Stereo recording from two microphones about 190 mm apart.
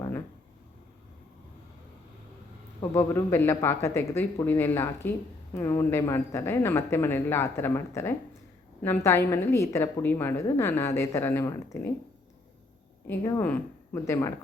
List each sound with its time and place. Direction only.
2.9 s a woman's voice: 15° left (ahead or behind)
13.1 s a woman's voice: 10° left (ahead or behind)